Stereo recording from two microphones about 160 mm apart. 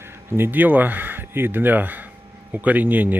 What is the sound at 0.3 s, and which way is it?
Speech, 10° right (ahead or behind).